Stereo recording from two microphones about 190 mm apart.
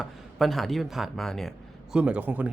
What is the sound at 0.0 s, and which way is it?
Speech, centre (ahead or behind).